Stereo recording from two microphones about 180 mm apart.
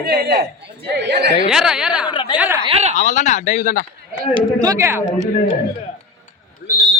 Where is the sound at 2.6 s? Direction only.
35° right (ahead or behind).